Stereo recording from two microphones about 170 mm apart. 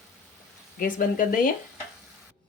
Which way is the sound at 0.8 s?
55° left (ahead or behind).